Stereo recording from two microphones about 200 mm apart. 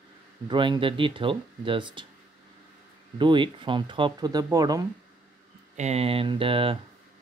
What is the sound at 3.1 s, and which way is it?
Speech, 25° right (ahead or behind).